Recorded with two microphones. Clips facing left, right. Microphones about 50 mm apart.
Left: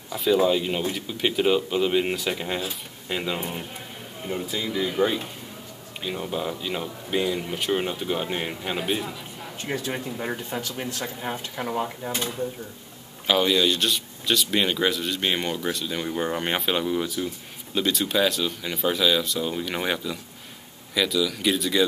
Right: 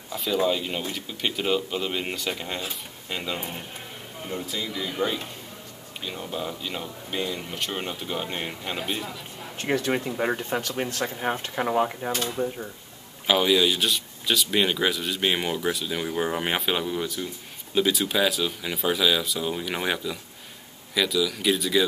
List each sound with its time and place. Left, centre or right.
0.1 s speech: centre
9.6 s speech: right
9.9 s speech: right
11.0 s speech: centre
12.1 s speech: centre
13.3 s speech: centre